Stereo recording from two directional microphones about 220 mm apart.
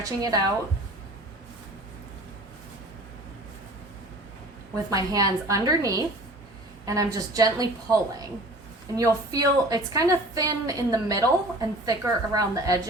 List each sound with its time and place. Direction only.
0.0 s a woman's voice: 15° right (ahead or behind)
4.7 s a woman's voice: 15° right (ahead or behind)
9.0 s a woman's voice: 15° right (ahead or behind)